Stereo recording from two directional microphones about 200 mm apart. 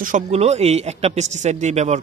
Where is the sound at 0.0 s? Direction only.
35° right (ahead or behind).